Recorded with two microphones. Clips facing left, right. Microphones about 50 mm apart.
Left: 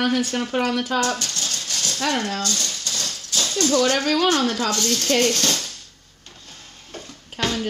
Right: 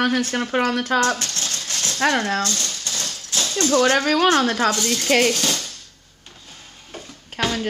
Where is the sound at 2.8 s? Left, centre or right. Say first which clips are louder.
Even; right.